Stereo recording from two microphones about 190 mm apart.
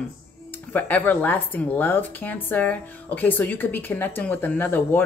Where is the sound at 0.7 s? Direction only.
10° left (ahead or behind).